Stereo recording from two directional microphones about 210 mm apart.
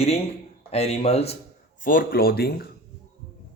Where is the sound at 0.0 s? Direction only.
30° left (ahead or behind).